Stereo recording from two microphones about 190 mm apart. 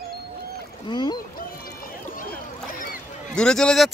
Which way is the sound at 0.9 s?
25° left (ahead or behind).